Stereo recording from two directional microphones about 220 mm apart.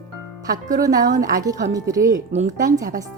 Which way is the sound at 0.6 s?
15° right (ahead or behind).